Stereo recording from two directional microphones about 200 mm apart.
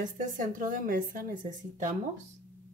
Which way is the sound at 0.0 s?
40° right (ahead or behind).